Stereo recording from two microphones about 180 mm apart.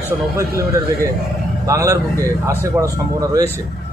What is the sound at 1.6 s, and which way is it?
A man's voice, 20° right (ahead or behind).